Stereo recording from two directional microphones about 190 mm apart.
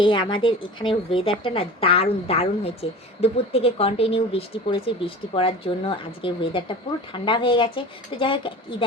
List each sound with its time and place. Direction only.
0.0 s speech: 25° left (ahead or behind)